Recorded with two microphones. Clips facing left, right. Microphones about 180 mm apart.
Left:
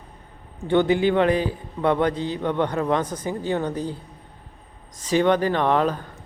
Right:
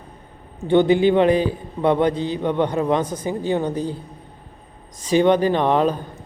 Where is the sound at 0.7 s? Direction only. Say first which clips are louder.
Right 4 dB; 20° right (ahead or behind).